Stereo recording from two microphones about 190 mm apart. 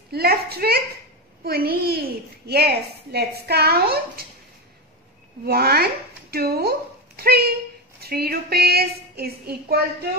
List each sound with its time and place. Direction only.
0.1 s a child's voice: 55° right (ahead or behind)
5.4 s a woman's voice: 55° right (ahead or behind)